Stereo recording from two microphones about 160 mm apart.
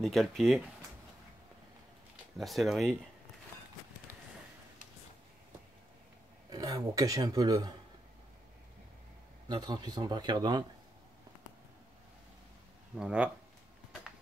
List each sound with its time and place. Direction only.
0.0 s speech: centre (ahead or behind)
2.3 s speech: centre (ahead or behind)
6.5 s speech: 20° right (ahead or behind)
9.5 s speech: 25° right (ahead or behind)
12.9 s speech: 5° right (ahead or behind)